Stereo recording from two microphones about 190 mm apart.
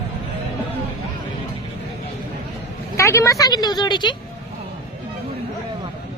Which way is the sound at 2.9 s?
15° left (ahead or behind).